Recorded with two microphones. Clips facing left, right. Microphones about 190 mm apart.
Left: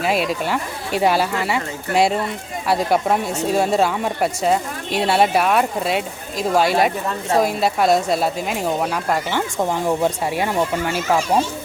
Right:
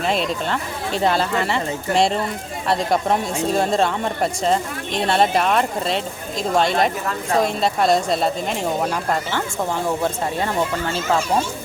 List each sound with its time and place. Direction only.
0.0 s speech: 5° left (ahead or behind)